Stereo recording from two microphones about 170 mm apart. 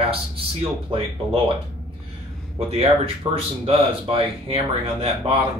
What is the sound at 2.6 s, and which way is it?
Speech, 35° right (ahead or behind).